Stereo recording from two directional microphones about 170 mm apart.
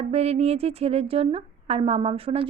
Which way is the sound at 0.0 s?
35° right (ahead or behind).